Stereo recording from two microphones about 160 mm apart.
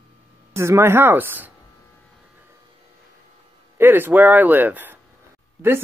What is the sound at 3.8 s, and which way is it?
Speech, 10° right (ahead or behind).